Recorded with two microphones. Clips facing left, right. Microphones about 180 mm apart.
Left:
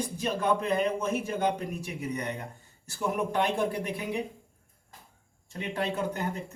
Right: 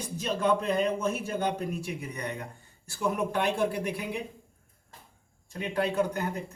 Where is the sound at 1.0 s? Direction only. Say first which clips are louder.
Left 1 dB; 15° left (ahead or behind).